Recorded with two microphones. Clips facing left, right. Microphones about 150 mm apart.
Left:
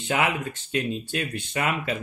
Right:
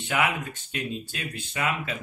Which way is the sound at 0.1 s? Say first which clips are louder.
Left 2 dB; 35° left (ahead or behind).